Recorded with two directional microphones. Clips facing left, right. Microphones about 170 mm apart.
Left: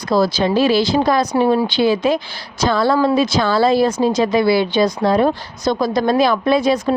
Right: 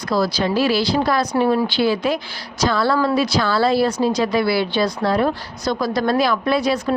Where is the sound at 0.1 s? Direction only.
25° left (ahead or behind).